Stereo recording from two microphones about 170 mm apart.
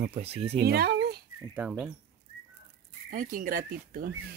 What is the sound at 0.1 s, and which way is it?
Speech, 35° right (ahead or behind).